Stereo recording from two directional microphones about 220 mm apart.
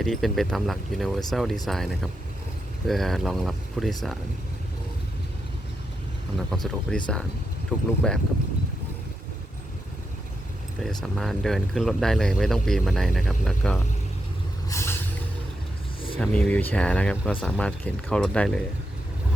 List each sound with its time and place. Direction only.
0.0 s speech: centre (ahead or behind)
6.5 s speech: centre (ahead or behind)
10.8 s speech: centre (ahead or behind)
14.7 s a sound: 10° left (ahead or behind)
16.1 s speech: 5° left (ahead or behind)